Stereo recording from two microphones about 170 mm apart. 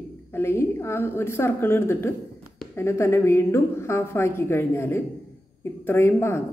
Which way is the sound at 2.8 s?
15° left (ahead or behind).